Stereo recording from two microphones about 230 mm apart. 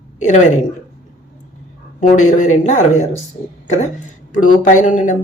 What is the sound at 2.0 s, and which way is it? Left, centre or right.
A woman's voice, left.